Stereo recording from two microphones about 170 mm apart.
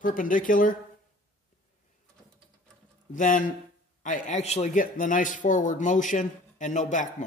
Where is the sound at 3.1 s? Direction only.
50° left (ahead or behind).